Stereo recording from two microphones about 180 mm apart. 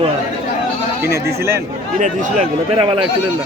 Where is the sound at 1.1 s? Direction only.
15° right (ahead or behind).